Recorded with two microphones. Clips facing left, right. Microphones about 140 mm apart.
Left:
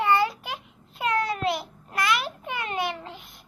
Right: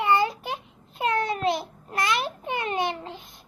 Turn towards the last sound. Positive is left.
turn(degrees=-25)  # may be behind; listen again after turning